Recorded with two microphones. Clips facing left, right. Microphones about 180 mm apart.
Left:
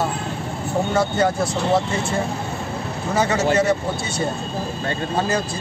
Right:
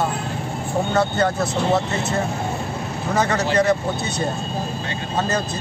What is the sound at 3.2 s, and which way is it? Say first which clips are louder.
Speech: left 1 dB; 10° left (ahead or behind).